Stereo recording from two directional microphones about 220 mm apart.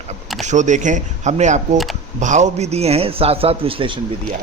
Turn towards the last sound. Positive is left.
turn(degrees=-25)  # may be behind; listen again after turning